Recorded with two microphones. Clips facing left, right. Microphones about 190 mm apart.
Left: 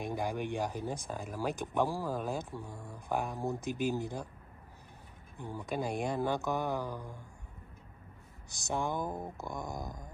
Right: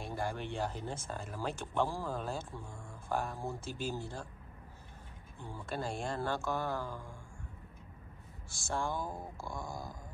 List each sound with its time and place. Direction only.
0.0 s speech: 15° left (ahead or behind)
5.4 s speech: 15° left (ahead or behind)
8.5 s speech: 20° left (ahead or behind)